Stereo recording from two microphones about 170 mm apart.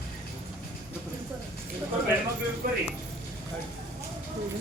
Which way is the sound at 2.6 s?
55° right (ahead or behind).